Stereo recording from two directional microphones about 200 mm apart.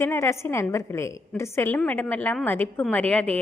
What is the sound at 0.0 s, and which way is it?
A woman's voice, 15° left (ahead or behind).